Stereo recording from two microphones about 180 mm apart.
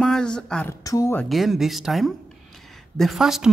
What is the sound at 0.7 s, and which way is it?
Speech, 20° left (ahead or behind).